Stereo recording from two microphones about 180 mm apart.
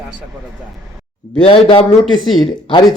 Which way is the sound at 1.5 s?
30° left (ahead or behind).